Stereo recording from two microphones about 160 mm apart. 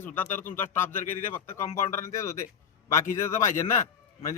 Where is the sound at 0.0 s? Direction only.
10° left (ahead or behind).